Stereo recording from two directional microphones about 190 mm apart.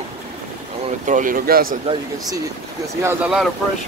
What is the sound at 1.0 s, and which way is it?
Speech, 45° right (ahead or behind).